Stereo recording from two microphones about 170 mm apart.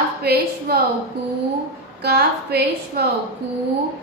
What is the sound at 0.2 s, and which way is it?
Speech, 70° right (ahead or behind).